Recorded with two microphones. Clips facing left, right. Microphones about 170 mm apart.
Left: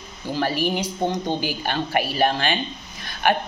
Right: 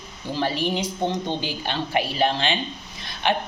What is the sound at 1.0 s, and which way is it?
Speech, 10° left (ahead or behind).